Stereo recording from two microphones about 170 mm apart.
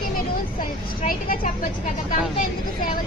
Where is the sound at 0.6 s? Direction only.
55° left (ahead or behind).